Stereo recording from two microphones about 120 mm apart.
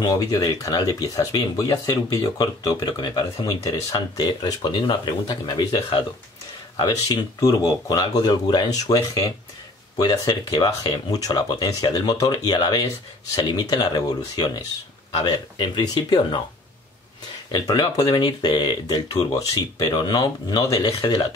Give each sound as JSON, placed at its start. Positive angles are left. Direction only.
{"t": 0.0, "sound": "speech", "side_deg": 35}
{"t": 7.3, "sound": "speech", "side_deg": 30}
{"t": 17.5, "sound": "speech", "side_deg": 35}